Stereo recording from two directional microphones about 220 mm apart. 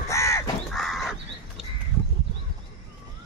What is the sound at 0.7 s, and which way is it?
Crow, centre (ahead or behind).